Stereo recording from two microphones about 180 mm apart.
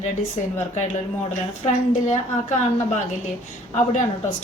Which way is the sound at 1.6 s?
40° left (ahead or behind).